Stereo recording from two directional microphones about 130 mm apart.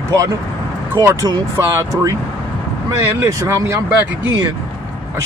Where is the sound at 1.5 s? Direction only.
20° right (ahead or behind).